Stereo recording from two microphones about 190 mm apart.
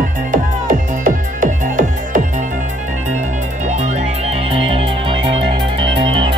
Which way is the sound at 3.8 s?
40° right (ahead or behind).